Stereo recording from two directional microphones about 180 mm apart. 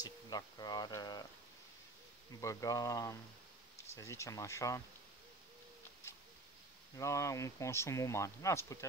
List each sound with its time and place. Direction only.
0.0 s speech: 20° left (ahead or behind)
2.4 s speech: 20° left (ahead or behind)
7.0 s speech: 15° left (ahead or behind)